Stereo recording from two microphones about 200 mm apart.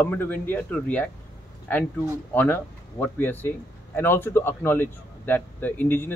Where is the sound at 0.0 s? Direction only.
10° left (ahead or behind).